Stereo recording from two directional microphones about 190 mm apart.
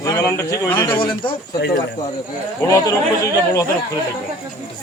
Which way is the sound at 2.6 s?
15° left (ahead or behind).